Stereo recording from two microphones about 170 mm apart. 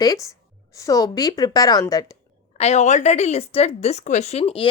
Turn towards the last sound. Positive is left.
turn(degrees=35)  # may be behind; listen again after turning